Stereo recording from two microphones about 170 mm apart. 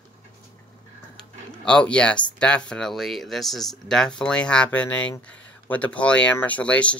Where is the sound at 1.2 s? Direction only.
5° left (ahead or behind).